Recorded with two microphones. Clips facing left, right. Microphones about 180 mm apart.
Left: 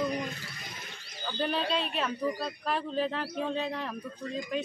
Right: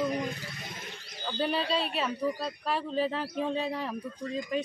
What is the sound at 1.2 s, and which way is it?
A man's voice, 5° right (ahead or behind).